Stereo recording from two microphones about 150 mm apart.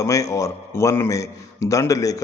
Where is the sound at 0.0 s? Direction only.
20° left (ahead or behind).